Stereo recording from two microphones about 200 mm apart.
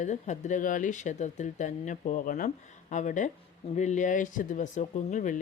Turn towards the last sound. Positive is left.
turn(degrees=40)  # may be behind; listen again after turning